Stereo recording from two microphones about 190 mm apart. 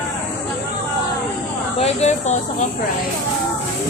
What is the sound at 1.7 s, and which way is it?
Speech, 35° left (ahead or behind).